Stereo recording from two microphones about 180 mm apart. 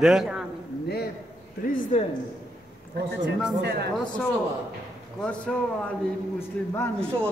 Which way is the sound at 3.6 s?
65° right (ahead or behind).